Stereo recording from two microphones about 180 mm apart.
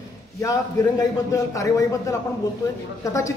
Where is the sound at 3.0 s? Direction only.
15° left (ahead or behind).